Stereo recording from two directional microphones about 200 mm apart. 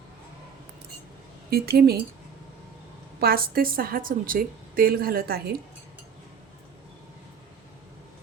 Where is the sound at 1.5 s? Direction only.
50° right (ahead or behind).